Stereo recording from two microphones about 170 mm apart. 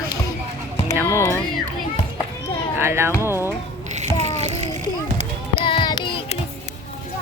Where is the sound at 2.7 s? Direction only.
15° right (ahead or behind).